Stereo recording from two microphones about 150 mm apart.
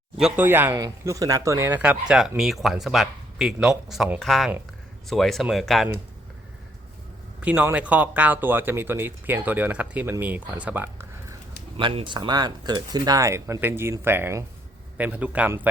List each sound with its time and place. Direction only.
0.2 s speech: 5° right (ahead or behind)
0.4 s speech: 15° right (ahead or behind)
7.4 s speech: 10° right (ahead or behind)
11.8 s speech: 35° right (ahead or behind); by 15.6 s 10° right (ahead or behind)